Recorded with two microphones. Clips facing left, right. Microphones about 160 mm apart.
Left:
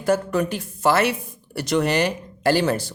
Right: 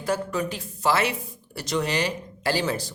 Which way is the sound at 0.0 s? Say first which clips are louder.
Left 6 dB; 55° left (ahead or behind).